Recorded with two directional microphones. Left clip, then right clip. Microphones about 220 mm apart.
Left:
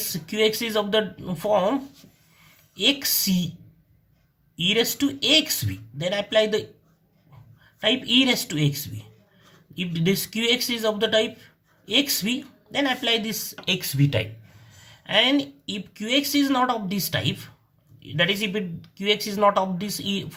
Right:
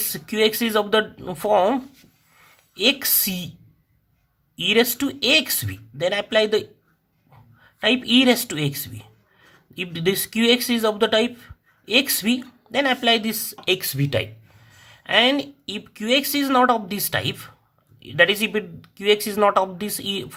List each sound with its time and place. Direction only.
0.0 s speech: 40° right (ahead or behind)
4.5 s speech: 40° right (ahead or behind)
7.8 s speech: 40° right (ahead or behind)